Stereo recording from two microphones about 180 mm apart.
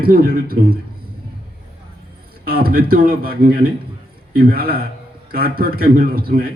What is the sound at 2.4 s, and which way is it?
A man's voice, 55° right (ahead or behind).